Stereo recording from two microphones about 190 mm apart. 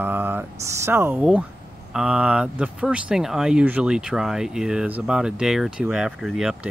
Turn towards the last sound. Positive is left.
turn(degrees=0)  # may be behind; listen again after turning